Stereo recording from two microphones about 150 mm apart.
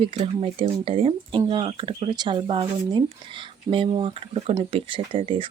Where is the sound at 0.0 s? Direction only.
35° right (ahead or behind).